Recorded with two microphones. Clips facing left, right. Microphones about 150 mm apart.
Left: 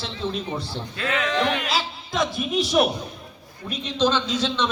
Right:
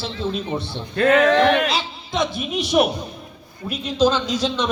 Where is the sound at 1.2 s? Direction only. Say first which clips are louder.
Right 8 dB; 65° right (ahead or behind).